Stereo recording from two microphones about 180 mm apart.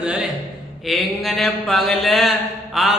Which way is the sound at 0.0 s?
Centre (ahead or behind).